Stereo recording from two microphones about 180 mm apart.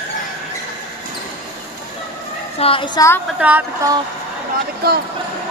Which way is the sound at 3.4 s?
10° right (ahead or behind).